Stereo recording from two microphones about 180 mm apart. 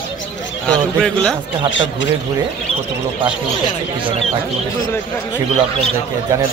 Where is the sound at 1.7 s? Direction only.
90° left.